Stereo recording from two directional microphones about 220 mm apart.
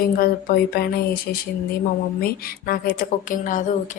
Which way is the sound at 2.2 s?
45° left (ahead or behind).